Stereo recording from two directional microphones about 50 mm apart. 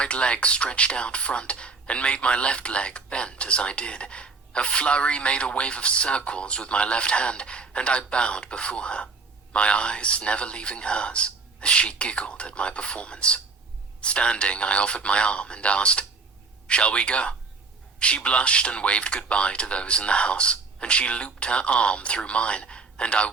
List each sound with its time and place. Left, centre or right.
0.0 s speech: left